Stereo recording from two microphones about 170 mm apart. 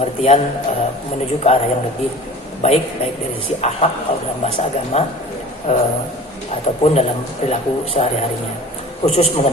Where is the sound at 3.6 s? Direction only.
40° left (ahead or behind).